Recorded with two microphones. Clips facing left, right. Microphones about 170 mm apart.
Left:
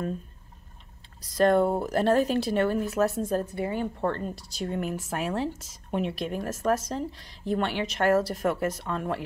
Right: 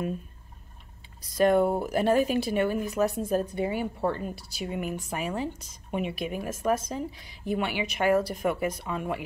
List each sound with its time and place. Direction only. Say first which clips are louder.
1.2 s speech: even; 5° right (ahead or behind)
3.3 s speech: right 1 dB; 15° right (ahead or behind)